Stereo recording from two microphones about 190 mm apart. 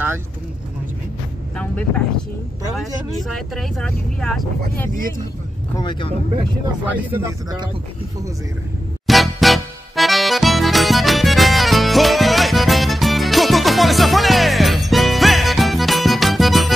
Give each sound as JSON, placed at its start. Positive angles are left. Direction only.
{"t": 1.6, "sound": "speech", "side_deg": 5}
{"t": 5.8, "sound": "speech", "side_deg": 25}
{"t": 6.9, "sound": "speech", "side_deg": -10}
{"t": 9.0, "sound": "music", "side_deg": 0}